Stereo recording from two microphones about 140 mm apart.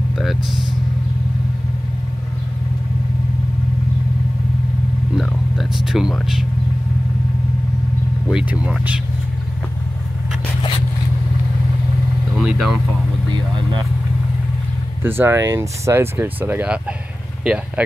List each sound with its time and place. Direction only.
5.1 s a sound: centre (ahead or behind)
6.1 s speech: centre (ahead or behind)
8.3 s speech: 5° right (ahead or behind)
12.4 s speech: 5° right (ahead or behind)
13.3 s speech: 35° right (ahead or behind)
15.0 s speech: 15° right (ahead or behind)